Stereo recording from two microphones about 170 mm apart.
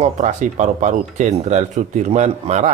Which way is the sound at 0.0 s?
45° right (ahead or behind).